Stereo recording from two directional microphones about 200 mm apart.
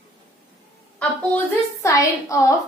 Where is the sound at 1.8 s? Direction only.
15° left (ahead or behind).